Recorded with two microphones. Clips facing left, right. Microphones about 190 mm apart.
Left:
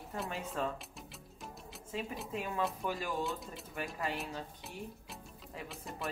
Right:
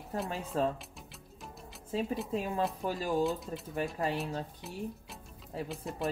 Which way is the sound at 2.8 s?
35° right (ahead or behind).